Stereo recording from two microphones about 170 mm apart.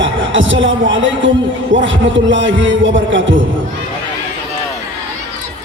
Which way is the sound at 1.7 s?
90° right.